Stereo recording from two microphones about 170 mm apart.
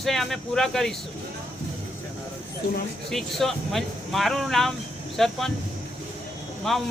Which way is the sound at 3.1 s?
Centre (ahead or behind).